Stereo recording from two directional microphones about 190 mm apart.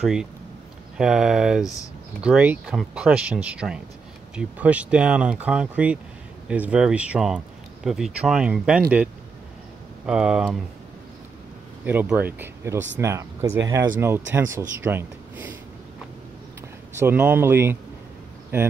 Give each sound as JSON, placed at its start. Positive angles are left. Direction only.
{"t": 0.0, "sound": "speech", "side_deg": -5}
{"t": 10.0, "sound": "speech", "side_deg": -5}
{"t": 11.8, "sound": "speech", "side_deg": -10}
{"t": 17.0, "sound": "speech", "side_deg": -10}